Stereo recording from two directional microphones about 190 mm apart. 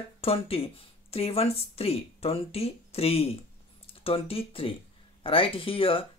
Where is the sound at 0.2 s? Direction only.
30° left (ahead or behind).